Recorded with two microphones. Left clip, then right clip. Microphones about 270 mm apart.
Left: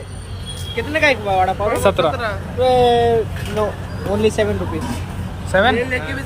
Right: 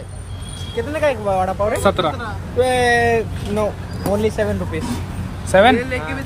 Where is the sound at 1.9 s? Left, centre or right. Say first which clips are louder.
Left 2 dB; centre.